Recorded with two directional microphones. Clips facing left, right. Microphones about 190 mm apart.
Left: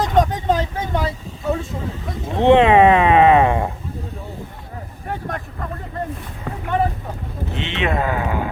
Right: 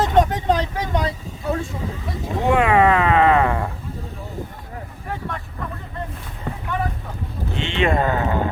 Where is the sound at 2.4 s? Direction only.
25° left (ahead or behind).